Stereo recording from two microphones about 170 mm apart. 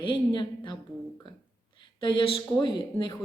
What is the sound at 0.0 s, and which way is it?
Speech, 30° left (ahead or behind).